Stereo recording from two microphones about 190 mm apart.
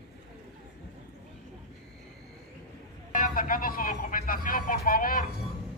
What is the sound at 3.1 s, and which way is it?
Speech, 45° left (ahead or behind).